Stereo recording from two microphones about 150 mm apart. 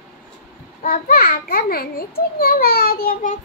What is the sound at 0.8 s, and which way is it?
A child's voice, 85° left.